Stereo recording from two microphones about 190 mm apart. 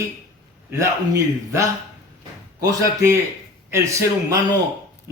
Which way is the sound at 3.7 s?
15° right (ahead or behind).